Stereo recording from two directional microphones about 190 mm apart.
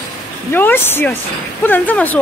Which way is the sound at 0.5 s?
10° left (ahead or behind).